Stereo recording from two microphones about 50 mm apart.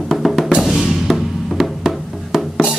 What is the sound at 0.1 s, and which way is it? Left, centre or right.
Music, centre.